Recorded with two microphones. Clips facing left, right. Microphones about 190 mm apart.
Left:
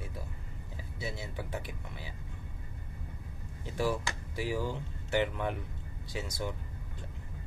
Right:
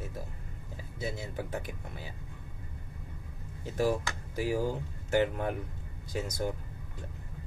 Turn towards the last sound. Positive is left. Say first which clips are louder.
# right 4 dB
turn(degrees=-45)  # may be behind; listen again after turning